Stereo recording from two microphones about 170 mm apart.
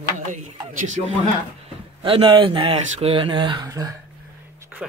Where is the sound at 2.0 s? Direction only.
30° right (ahead or behind).